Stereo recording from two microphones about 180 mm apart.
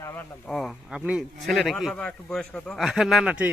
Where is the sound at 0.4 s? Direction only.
Centre (ahead or behind).